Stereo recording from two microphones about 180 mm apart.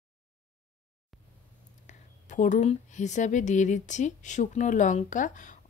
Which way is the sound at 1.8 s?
45° left (ahead or behind).